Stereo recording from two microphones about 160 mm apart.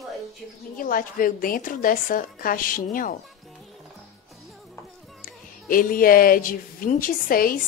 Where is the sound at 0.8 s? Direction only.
60° left (ahead or behind).